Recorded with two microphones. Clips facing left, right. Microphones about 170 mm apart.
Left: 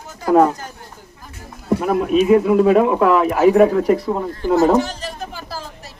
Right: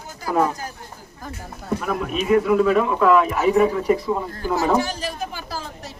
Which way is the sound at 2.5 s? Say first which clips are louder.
Left 4 dB; 55° left (ahead or behind).